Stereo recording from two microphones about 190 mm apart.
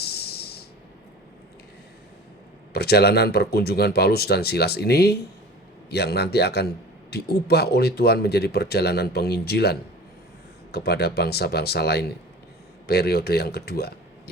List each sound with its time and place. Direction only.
0.0 s music: 55° left (ahead or behind)
2.7 s speech: 55° left (ahead or behind)